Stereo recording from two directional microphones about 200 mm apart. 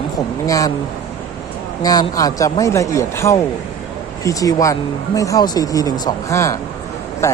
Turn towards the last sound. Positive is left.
turn(degrees=15)  # may be behind; listen again after turning